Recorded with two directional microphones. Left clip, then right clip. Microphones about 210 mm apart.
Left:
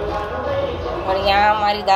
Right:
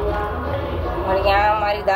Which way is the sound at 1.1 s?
25° left (ahead or behind).